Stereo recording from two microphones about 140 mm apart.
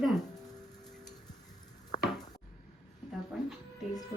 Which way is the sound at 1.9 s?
60° left (ahead or behind).